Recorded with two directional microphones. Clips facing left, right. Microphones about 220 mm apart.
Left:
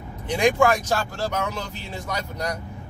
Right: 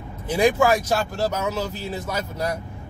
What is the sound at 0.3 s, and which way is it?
Speech, 5° right (ahead or behind).